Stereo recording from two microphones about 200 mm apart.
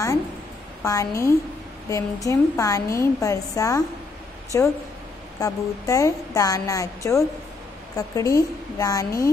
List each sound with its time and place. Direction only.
0.8 s a woman's voice: 15° left (ahead or behind)